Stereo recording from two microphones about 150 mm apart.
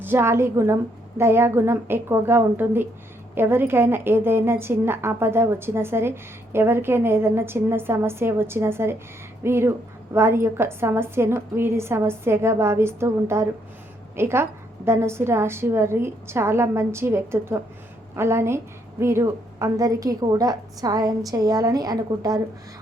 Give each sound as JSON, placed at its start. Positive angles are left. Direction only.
{"t": 0.0, "sound": "a woman's voice", "side_deg": -15}